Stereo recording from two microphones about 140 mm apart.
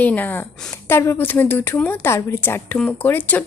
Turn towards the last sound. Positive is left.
turn(degrees=10)  # may be behind; listen again after turning